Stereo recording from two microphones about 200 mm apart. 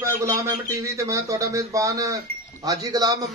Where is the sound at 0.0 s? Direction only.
15° right (ahead or behind).